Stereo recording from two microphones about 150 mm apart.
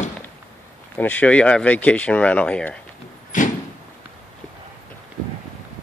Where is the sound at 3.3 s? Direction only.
60° left (ahead or behind).